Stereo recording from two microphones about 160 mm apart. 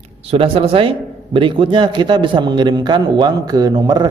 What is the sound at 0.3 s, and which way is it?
A man's voice, 35° right (ahead or behind).